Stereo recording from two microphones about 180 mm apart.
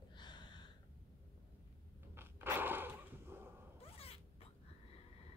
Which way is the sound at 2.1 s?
10° right (ahead or behind).